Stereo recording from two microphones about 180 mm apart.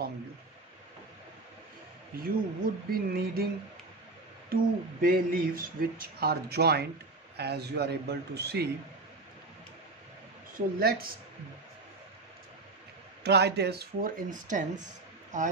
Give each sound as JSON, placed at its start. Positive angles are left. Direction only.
{"t": 2.1, "sound": "speech", "side_deg": -55}
{"t": 4.5, "sound": "speech", "side_deg": -55}
{"t": 10.5, "sound": "speech", "side_deg": -55}
{"t": 13.2, "sound": "speech", "side_deg": -65}